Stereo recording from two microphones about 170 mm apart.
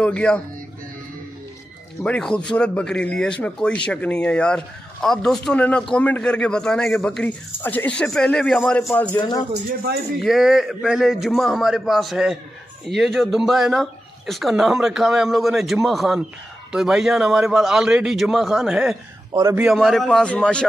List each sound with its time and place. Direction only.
0.0 s speech: 5° left (ahead or behind)
2.0 s speech: 5° left (ahead or behind)
10.2 s speech: centre (ahead or behind)
19.3 s a man's voice: 15° right (ahead or behind)
19.6 s speech: centre (ahead or behind)